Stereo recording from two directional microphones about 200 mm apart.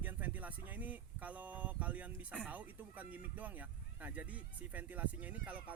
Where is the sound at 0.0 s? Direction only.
10° right (ahead or behind).